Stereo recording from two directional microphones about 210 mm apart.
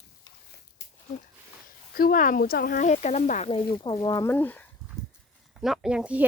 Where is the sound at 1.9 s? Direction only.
45° left (ahead or behind).